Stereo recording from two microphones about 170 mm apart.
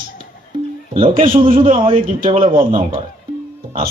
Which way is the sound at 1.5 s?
55° right (ahead or behind).